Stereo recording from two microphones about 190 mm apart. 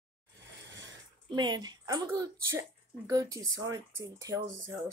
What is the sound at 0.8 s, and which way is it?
Speech, 20° right (ahead or behind).